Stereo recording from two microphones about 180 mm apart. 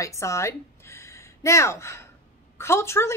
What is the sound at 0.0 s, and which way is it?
A woman's voice, 15° left (ahead or behind).